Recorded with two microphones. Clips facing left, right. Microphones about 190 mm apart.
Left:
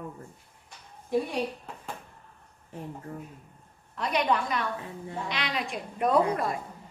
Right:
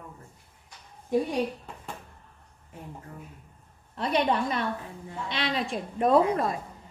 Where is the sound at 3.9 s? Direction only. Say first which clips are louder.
Right 1 dB; 30° right (ahead or behind).